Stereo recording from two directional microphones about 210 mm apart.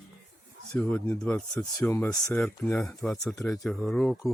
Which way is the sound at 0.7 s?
5° left (ahead or behind).